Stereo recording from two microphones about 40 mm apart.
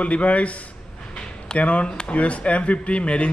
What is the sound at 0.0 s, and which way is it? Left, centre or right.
Speech, left.